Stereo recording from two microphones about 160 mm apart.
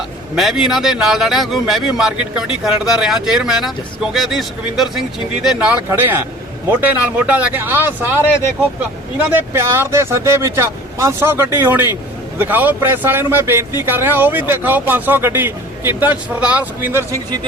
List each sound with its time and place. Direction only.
0.3 s a man's voice: centre (ahead or behind)
9.3 s speech: 15° right (ahead or behind)